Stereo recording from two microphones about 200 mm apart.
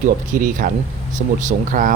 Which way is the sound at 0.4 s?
40° right (ahead or behind).